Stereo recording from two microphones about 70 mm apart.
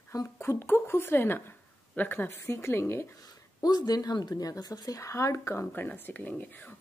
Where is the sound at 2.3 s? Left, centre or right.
Left.